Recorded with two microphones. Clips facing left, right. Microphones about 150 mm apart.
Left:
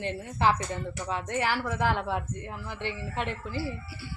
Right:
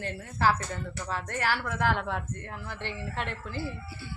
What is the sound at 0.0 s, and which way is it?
Speech, 20° left (ahead or behind).